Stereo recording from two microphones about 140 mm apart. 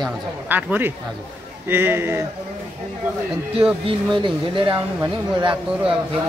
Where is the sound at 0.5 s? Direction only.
10° right (ahead or behind).